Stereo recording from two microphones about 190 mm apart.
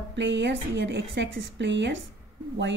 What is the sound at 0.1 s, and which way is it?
A woman's voice, 70° right (ahead or behind).